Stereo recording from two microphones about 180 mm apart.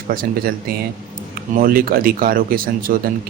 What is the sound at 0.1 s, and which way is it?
Speech, 55° right (ahead or behind).